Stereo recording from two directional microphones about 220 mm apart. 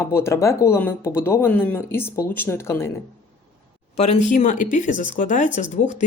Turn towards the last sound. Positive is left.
turn(degrees=30)  # may be behind; listen again after turning